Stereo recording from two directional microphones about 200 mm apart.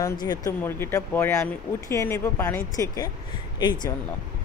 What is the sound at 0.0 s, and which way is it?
Speech, 20° left (ahead or behind).